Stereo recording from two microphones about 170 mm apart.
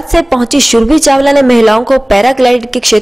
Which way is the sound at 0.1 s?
Centre (ahead or behind).